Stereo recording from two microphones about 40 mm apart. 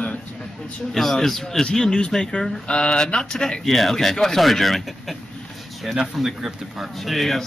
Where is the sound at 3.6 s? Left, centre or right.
Centre.